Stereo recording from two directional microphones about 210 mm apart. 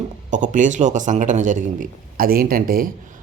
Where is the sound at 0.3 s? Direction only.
40° right (ahead or behind).